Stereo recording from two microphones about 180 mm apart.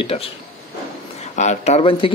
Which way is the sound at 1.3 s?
40° left (ahead or behind).